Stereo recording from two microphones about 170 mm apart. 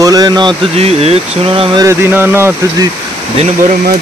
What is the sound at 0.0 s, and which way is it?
Speech, 20° right (ahead or behind).